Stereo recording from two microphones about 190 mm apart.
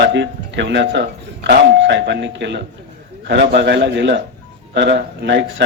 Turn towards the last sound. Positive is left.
turn(degrees=-65)  # may be behind; listen again after turning